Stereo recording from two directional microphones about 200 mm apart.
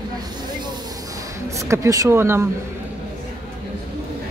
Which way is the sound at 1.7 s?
15° right (ahead or behind).